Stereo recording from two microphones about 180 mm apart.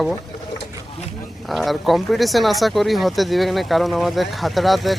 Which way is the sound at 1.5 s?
Centre (ahead or behind).